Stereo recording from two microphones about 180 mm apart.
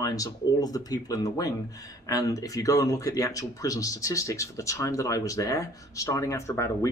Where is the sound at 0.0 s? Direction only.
20° left (ahead or behind).